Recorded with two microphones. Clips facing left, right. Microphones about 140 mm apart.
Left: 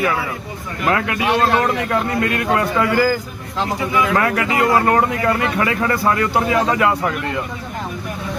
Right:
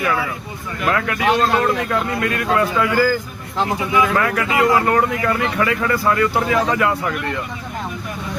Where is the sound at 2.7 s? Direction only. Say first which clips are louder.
Left 1 dB; 20° left (ahead or behind).